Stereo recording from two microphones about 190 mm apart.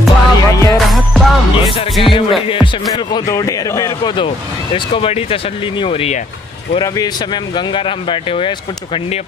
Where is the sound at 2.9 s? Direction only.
20° left (ahead or behind).